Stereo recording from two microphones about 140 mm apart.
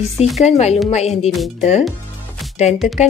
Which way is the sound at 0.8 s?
50° left (ahead or behind).